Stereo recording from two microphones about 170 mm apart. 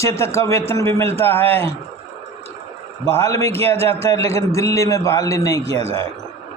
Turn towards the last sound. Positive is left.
turn(degrees=15)  # may be behind; listen again after turning